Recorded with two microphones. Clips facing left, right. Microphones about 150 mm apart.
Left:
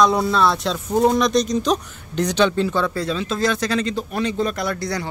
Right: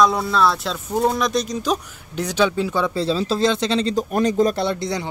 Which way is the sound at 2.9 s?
30° right (ahead or behind).